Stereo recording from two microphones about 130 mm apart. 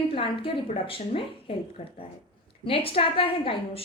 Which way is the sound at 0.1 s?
45° left (ahead or behind).